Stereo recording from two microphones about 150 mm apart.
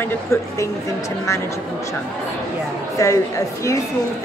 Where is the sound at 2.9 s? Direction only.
20° left (ahead or behind).